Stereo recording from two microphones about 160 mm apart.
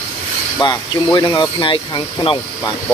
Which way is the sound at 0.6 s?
30° left (ahead or behind).